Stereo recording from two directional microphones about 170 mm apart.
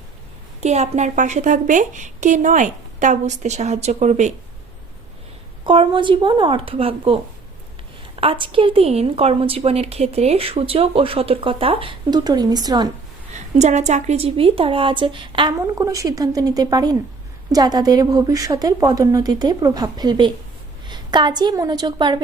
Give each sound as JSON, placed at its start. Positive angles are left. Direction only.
{"t": 0.6, "sound": "a woman's voice", "side_deg": -40}
{"t": 5.6, "sound": "a woman's voice", "side_deg": -30}
{"t": 8.2, "sound": "a woman's voice", "side_deg": -30}
{"t": 13.6, "sound": "a woman's voice", "side_deg": -40}